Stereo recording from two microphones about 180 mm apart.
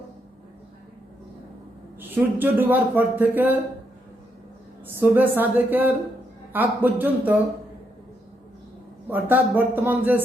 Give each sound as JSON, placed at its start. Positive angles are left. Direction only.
{"t": 2.0, "sound": "a man's voice", "side_deg": -10}
{"t": 4.9, "sound": "a man's voice", "side_deg": -10}
{"t": 9.0, "sound": "a man's voice", "side_deg": -10}